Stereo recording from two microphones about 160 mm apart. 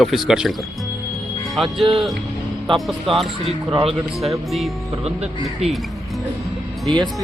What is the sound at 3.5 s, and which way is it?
Speech, 35° right (ahead or behind).